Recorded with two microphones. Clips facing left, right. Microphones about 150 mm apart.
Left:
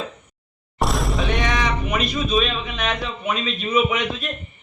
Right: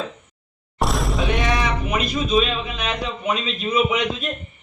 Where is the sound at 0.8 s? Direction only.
Centre (ahead or behind).